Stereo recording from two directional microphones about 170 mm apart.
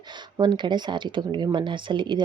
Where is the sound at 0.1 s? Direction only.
25° right (ahead or behind).